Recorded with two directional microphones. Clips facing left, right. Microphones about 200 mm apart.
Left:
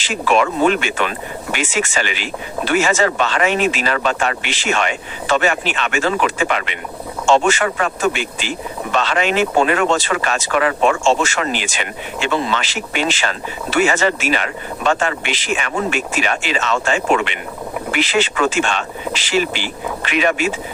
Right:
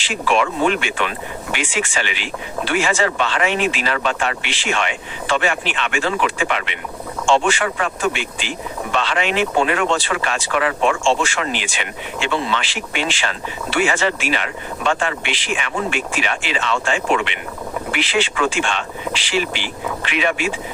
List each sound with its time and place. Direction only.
0.0 s speech: 40° left (ahead or behind)